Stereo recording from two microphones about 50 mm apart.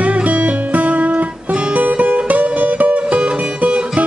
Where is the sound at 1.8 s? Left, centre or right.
Right.